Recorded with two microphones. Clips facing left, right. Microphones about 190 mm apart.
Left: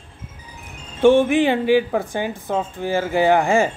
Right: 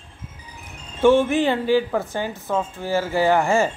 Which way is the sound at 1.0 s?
15° left (ahead or behind).